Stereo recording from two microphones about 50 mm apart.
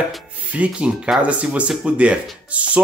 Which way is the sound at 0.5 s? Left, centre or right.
Right.